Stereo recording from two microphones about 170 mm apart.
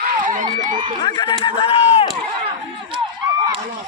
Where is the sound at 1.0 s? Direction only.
25° left (ahead or behind).